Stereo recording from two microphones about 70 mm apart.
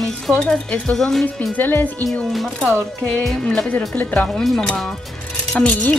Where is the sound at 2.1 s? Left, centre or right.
Centre.